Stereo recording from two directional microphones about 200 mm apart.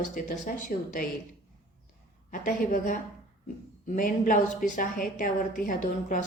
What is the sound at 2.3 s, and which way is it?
A woman's voice, 40° left (ahead or behind).